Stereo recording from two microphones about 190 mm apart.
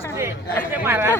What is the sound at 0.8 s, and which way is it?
Speech, 10° right (ahead or behind).